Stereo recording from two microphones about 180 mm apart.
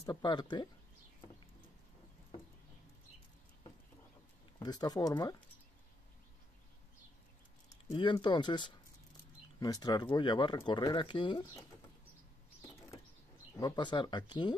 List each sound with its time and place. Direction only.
0.0 s speech: 25° left (ahead or behind)
4.6 s speech: 20° left (ahead or behind)
7.9 s speech: 25° left (ahead or behind)
13.6 s speech: 25° left (ahead or behind)